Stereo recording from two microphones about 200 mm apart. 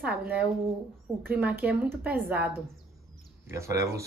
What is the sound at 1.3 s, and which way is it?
Speech, 10° right (ahead or behind).